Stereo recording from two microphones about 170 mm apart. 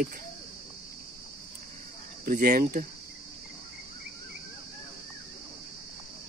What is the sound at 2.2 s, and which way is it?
Speech, 55° right (ahead or behind).